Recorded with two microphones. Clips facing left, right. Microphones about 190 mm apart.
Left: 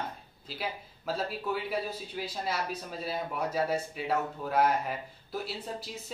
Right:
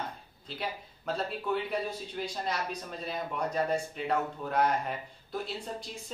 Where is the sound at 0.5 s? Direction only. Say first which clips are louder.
Even; 5° left (ahead or behind).